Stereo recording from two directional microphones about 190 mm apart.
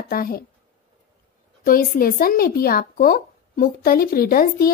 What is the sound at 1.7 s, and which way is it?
Speech, 50° left (ahead or behind).